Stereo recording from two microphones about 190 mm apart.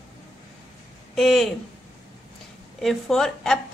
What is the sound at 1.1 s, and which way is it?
Speech, centre (ahead or behind).